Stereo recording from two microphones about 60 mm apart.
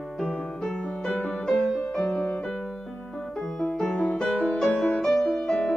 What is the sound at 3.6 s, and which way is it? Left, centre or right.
Music, centre.